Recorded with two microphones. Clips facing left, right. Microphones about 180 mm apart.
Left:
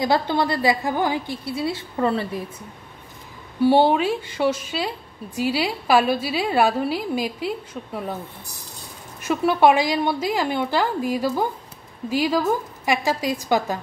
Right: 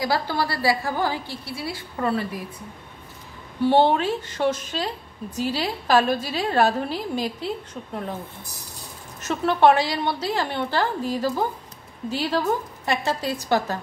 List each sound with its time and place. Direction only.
0.0 s a woman's voice: 20° left (ahead or behind)
3.6 s a woman's voice: 10° left (ahead or behind)
9.2 s a woman's voice: 10° left (ahead or behind)